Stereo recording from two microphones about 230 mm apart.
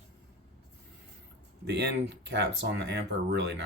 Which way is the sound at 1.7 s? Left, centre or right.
Right.